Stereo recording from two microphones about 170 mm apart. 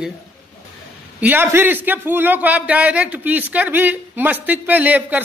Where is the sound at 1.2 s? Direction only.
10° right (ahead or behind).